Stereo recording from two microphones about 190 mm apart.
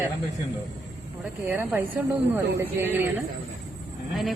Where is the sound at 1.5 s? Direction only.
10° right (ahead or behind).